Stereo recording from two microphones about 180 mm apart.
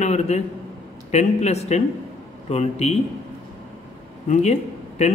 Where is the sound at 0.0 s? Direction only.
40° left (ahead or behind).